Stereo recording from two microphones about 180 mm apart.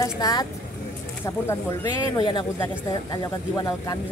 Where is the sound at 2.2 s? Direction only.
25° left (ahead or behind).